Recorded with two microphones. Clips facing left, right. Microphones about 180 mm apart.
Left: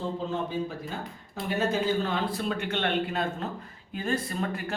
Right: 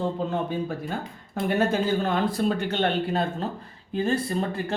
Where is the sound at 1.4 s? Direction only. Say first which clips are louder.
Right 7 dB; 55° right (ahead or behind).